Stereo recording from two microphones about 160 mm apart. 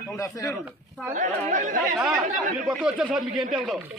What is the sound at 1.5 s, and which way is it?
Speech, 55° right (ahead or behind).